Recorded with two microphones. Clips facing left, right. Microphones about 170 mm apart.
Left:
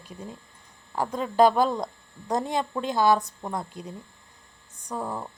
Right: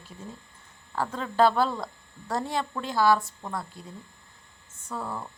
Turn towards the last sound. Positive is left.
turn(degrees=15)  # may be behind; listen again after turning